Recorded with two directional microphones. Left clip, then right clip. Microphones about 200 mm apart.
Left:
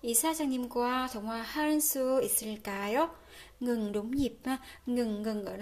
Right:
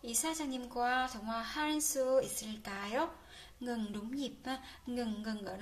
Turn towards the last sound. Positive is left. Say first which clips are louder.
# left 6 dB
turn(degrees=40)  # may be behind; listen again after turning